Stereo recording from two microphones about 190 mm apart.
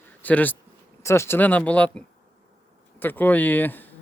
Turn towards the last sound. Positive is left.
turn(degrees=10)  # may be behind; listen again after turning